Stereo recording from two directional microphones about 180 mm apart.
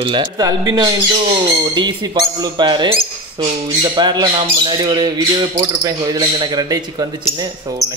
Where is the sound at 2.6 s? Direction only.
25° right (ahead or behind).